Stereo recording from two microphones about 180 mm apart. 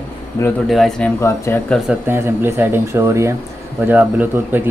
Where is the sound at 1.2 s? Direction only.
15° left (ahead or behind).